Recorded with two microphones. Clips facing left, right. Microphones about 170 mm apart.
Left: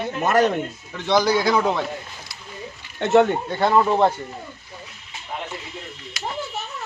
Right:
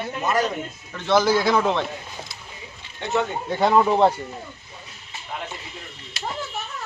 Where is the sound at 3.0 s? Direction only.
65° left (ahead or behind).